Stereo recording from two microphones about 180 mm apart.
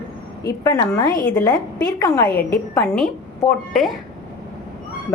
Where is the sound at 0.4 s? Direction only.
20° left (ahead or behind); by 3.9 s centre (ahead or behind).